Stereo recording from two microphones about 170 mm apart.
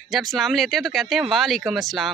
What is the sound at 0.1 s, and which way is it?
Speech, centre (ahead or behind).